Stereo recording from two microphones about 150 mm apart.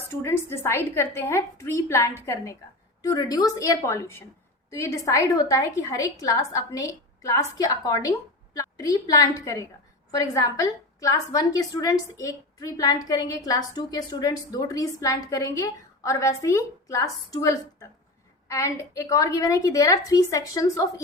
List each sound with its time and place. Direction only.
0.1 s a woman's voice: 15° left (ahead or behind)